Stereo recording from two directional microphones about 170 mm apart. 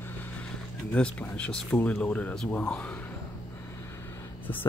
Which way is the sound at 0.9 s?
10° left (ahead or behind).